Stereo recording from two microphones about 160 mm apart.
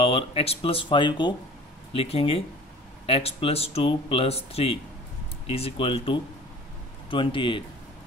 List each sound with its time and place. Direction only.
0.0 s speech: 35° left (ahead or behind)